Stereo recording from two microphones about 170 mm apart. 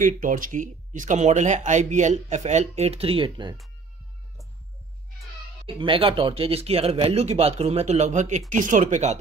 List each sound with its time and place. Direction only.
0.0 s speech: 50° right (ahead or behind); by 3.5 s 30° right (ahead or behind)
5.8 s speech: 30° right (ahead or behind)